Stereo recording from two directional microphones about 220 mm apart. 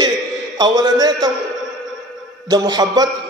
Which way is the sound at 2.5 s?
15° right (ahead or behind).